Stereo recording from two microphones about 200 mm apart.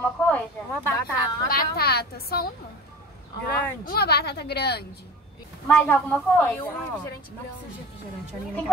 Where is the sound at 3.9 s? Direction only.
55° left (ahead or behind).